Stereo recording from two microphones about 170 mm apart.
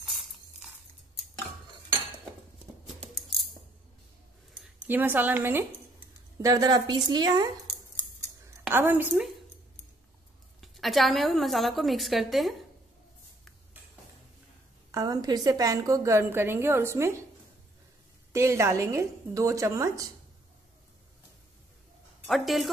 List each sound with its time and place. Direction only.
0.0 s a sound: centre (ahead or behind)
4.8 s a woman's voice: 10° right (ahead or behind)
8.6 s a woman's voice: 10° right (ahead or behind)
10.6 s a woman's voice: centre (ahead or behind)
14.9 s a woman's voice: 20° right (ahead or behind)
18.3 s a woman's voice: 15° right (ahead or behind)
22.2 s a woman's voice: centre (ahead or behind)